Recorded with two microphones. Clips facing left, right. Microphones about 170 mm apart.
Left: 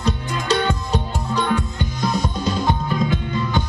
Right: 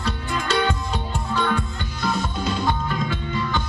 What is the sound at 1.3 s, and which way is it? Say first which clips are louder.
Music: left 3 dB; 20° left (ahead or behind).